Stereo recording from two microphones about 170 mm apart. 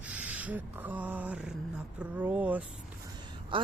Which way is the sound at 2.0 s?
10° right (ahead or behind).